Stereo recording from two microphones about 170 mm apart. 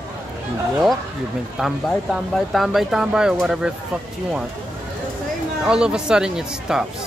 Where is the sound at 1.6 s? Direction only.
Centre (ahead or behind).